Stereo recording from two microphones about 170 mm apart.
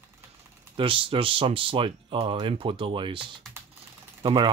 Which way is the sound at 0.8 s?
30° right (ahead or behind).